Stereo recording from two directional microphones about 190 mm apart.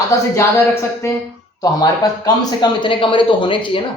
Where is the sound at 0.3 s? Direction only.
15° left (ahead or behind).